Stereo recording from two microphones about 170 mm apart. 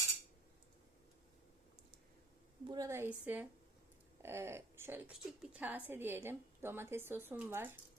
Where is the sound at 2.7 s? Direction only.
20° right (ahead or behind).